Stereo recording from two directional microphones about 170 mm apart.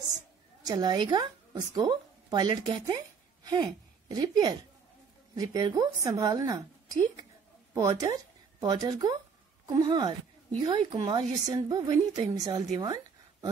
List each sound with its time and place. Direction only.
0.7 s a woman's voice: 25° right (ahead or behind)
4.1 s a woman's voice: 25° right (ahead or behind)
12.7 s a sound: 25° right (ahead or behind)